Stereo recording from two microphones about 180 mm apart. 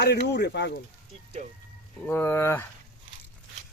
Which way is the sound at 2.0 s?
10° left (ahead or behind).